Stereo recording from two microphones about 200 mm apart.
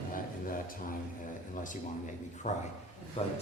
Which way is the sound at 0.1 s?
45° left (ahead or behind).